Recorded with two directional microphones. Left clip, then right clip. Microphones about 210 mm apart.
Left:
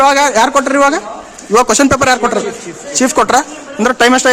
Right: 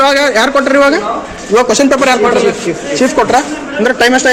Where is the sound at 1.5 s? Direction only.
45° left (ahead or behind).